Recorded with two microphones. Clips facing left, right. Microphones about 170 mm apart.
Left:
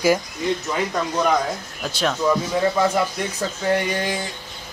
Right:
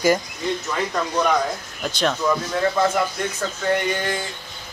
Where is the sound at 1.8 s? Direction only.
5° left (ahead or behind).